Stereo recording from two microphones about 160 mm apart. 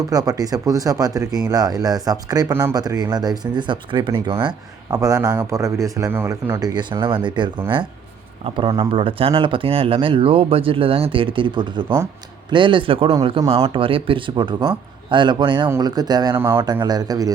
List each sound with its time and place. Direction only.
0.1 s a man's voice: 25° right (ahead or behind)